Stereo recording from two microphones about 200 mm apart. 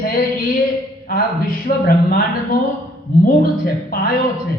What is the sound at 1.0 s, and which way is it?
Speech, 45° left (ahead or behind).